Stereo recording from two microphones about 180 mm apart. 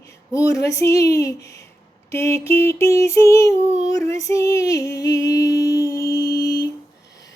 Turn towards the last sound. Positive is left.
turn(degrees=20)  # may be behind; listen again after turning